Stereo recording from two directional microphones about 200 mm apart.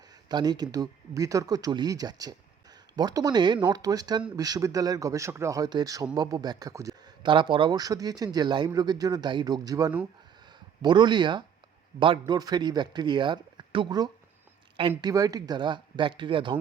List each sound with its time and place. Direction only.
0.3 s speech: 20° right (ahead or behind)